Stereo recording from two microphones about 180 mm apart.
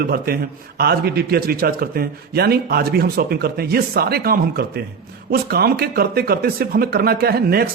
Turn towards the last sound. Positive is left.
turn(degrees=-60)  # may be behind; listen again after turning